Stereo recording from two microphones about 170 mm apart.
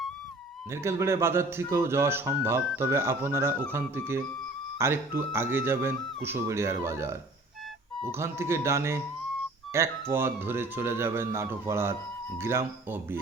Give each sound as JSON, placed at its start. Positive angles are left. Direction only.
{"t": 0.7, "sound": "speech", "side_deg": -15}